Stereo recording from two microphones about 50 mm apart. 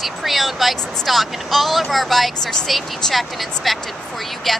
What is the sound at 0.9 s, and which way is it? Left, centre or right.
Speech, centre.